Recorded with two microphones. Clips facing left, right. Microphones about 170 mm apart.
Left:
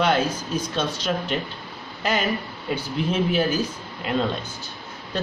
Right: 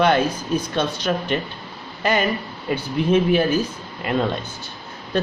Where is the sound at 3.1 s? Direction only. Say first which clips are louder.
Right 6 dB; 60° right (ahead or behind).